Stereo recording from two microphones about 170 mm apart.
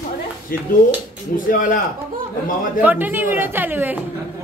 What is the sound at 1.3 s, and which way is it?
Speech, 55° left (ahead or behind).